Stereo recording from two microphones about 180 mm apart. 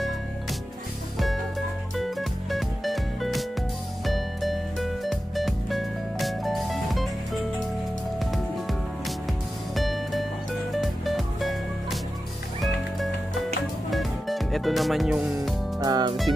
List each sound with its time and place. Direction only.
1.1 s music: centre (ahead or behind)
8.2 s music: centre (ahead or behind)
13.8 s music: centre (ahead or behind)
15.8 s music: 20° right (ahead or behind)